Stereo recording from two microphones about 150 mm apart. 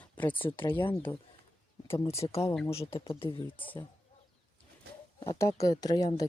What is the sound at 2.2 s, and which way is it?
Speech, 30° left (ahead or behind).